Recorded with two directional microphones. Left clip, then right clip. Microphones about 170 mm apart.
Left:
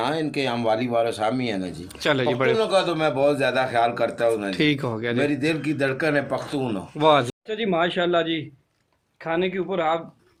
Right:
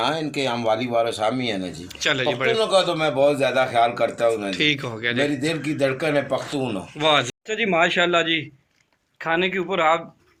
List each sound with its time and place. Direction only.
0.0 s a man's voice: centre (ahead or behind)
2.0 s speech: 70° left (ahead or behind)
2.6 s a man's voice: 5° right (ahead or behind)
4.5 s speech: 65° left (ahead or behind)
5.2 s a man's voice: 5° right (ahead or behind)
7.0 s speech: 55° left (ahead or behind)
7.4 s speech: 10° left (ahead or behind)